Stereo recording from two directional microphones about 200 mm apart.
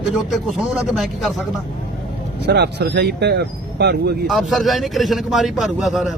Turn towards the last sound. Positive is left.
turn(degrees=0)  # may be behind; listen again after turning